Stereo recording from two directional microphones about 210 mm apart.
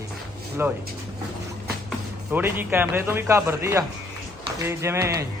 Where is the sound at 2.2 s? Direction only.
10° right (ahead or behind).